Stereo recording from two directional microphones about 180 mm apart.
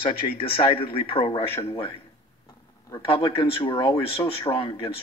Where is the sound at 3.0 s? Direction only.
30° left (ahead or behind).